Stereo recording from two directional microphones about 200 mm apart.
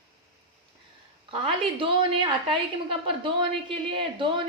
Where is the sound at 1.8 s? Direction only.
25° right (ahead or behind).